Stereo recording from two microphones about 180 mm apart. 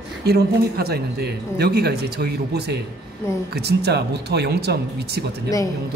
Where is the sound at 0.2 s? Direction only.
60° right (ahead or behind).